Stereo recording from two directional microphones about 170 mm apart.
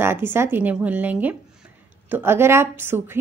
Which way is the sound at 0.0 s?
15° right (ahead or behind).